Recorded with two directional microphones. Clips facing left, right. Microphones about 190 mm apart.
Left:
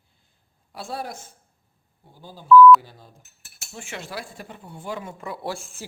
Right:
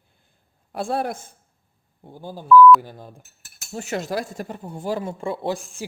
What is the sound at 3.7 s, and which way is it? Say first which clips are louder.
Speech: right 9 dB; 40° right (ahead or behind).